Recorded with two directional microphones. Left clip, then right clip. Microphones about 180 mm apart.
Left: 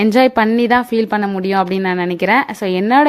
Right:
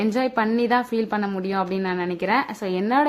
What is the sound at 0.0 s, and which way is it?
A woman's voice, 50° left (ahead or behind).